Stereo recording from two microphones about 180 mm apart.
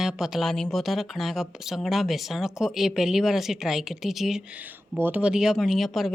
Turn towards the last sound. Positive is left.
turn(degrees=0)  # may be behind; listen again after turning